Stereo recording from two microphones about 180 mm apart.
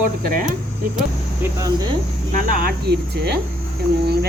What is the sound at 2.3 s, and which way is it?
Speech, 50° right (ahead or behind).